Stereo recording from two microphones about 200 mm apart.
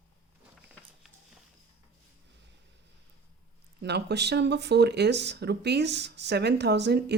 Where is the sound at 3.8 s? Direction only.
55° right (ahead or behind).